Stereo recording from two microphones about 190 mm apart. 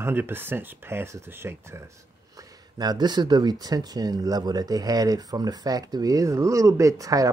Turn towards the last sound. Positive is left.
turn(degrees=-20)  # may be behind; listen again after turning